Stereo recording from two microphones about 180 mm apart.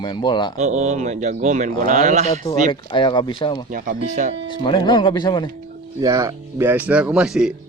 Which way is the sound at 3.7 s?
45° right (ahead or behind).